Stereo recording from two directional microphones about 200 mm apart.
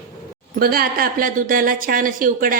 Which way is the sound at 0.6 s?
45° right (ahead or behind).